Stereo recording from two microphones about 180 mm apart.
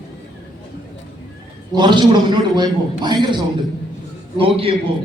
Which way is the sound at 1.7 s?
25° right (ahead or behind).